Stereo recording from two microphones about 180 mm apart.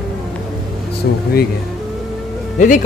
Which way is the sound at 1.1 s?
70° left (ahead or behind).